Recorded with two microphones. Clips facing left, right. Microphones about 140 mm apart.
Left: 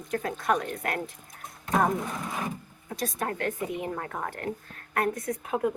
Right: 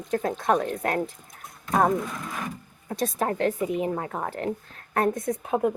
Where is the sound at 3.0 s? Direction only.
30° right (ahead or behind).